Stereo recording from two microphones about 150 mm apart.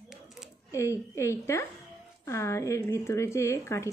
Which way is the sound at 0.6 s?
20° left (ahead or behind).